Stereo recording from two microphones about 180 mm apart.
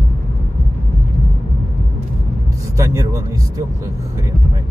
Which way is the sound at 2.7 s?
20° right (ahead or behind).